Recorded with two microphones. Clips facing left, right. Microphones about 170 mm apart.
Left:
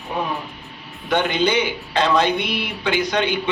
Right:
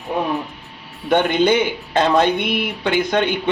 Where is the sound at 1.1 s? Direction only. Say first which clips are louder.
Right 4 dB; 50° right (ahead or behind).